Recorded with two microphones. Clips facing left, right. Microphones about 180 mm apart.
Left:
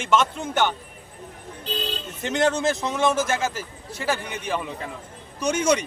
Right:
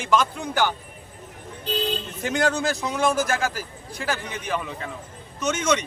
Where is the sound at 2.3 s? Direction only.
20° left (ahead or behind).